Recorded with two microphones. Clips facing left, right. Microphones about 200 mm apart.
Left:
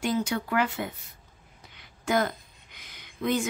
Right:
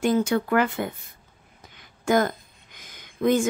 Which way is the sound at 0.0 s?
50° right (ahead or behind).